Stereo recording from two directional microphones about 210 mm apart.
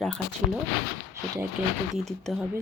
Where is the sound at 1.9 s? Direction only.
Centre (ahead or behind).